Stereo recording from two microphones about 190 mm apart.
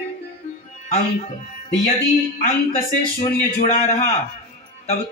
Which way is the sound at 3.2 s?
35° left (ahead or behind).